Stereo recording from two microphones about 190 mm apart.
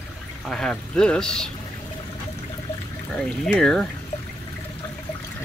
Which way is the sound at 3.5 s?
5° left (ahead or behind).